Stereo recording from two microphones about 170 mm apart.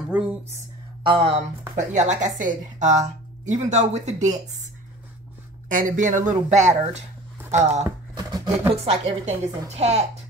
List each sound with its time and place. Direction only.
1.0 s a woman's voice: 35° right (ahead or behind)
1.8 s a woman's voice: 45° right (ahead or behind)
5.7 s a woman's voice: 50° right (ahead or behind)
7.8 s a sound: 20° right (ahead or behind)
8.8 s a woman's voice: 40° right (ahead or behind)